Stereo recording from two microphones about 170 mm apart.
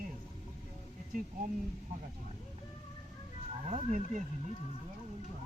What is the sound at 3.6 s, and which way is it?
Speech, 45° right (ahead or behind).